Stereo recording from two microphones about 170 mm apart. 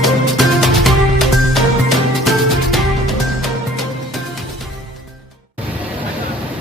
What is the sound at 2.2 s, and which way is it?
Music, centre (ahead or behind).